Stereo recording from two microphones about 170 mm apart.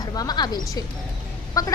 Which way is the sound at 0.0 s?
20° left (ahead or behind).